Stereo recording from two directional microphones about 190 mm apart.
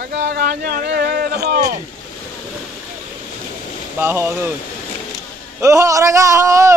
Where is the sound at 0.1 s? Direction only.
65° right (ahead or behind).